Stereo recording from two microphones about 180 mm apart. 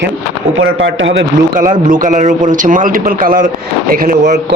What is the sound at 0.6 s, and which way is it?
Speech, 90° right.